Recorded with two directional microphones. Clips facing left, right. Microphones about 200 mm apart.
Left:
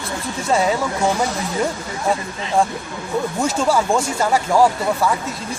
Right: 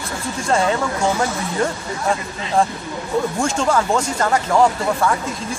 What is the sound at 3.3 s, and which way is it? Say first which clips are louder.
Speech: left 3 dB; 5° left (ahead or behind).